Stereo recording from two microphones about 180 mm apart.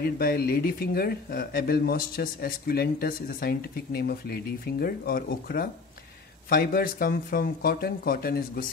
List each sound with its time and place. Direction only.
0.0 s speech: 55° left (ahead or behind)